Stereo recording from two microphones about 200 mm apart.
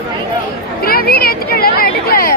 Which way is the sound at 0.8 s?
50° left (ahead or behind).